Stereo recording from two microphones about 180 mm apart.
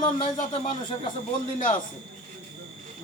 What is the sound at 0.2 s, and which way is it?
Speech, 45° left (ahead or behind).